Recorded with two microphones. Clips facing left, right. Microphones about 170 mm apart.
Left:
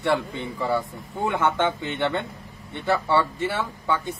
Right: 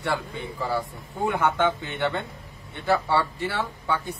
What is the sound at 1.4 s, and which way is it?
Speech, 20° left (ahead or behind).